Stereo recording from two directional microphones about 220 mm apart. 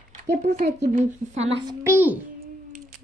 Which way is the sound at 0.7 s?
30° right (ahead or behind).